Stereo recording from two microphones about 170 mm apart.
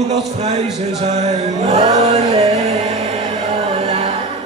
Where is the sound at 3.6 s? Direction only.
35° right (ahead or behind).